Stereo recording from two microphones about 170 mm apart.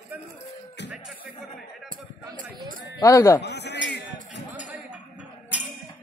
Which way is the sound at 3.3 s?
80° left.